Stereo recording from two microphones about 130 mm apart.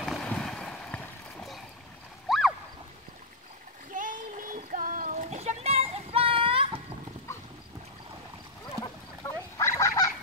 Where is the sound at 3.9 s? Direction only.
90° right; by 6.8 s 45° right (ahead or behind).